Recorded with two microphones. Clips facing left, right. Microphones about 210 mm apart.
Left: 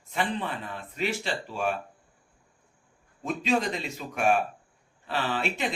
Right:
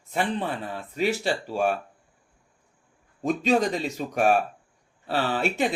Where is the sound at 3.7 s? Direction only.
40° right (ahead or behind).